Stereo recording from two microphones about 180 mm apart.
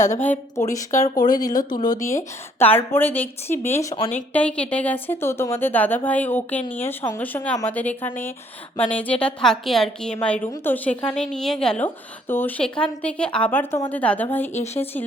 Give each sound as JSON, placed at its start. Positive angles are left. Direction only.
{"t": 0.2, "sound": "a woman's voice", "side_deg": 15}
{"t": 4.1, "sound": "a woman's voice", "side_deg": 10}
{"t": 14.5, "sound": "speech", "side_deg": 35}